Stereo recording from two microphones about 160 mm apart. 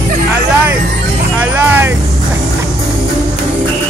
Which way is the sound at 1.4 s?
10° right (ahead or behind).